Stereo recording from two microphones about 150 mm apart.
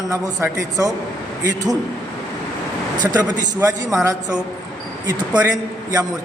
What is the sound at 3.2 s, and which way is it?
A man's voice, 25° right (ahead or behind).